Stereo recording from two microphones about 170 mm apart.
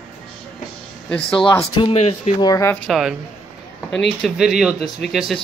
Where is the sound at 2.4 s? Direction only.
20° left (ahead or behind).